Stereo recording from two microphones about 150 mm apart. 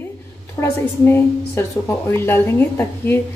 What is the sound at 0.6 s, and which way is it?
A woman's voice, 15° left (ahead or behind).